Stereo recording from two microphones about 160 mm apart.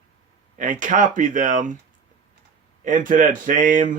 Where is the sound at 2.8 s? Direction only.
55° right (ahead or behind).